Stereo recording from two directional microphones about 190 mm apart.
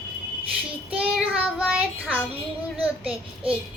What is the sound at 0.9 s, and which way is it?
Child singing, 5° right (ahead or behind).